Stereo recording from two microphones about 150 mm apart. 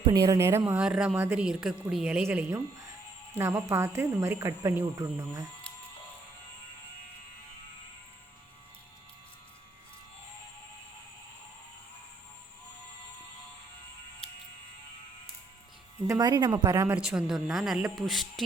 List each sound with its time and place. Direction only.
0.0 s speech: 30° right (ahead or behind)
0.3 s speech: 15° right (ahead or behind)
16.0 s speech: 25° right (ahead or behind)
16.8 s speech: 10° right (ahead or behind)